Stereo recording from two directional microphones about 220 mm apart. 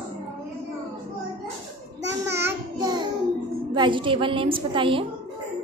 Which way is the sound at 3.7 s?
20° right (ahead or behind).